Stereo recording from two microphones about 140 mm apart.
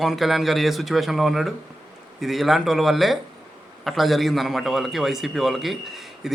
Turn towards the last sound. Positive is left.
turn(degrees=0)  # may be behind; listen again after turning